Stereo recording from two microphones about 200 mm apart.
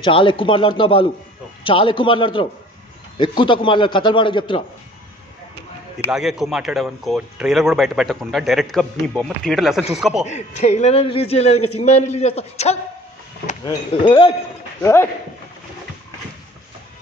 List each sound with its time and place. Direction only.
0.0 s a man's voice: 25° left (ahead or behind)
6.0 s speech: centre (ahead or behind)
10.2 s a man's voice: 35° left (ahead or behind)
14.8 s speech: 15° left (ahead or behind)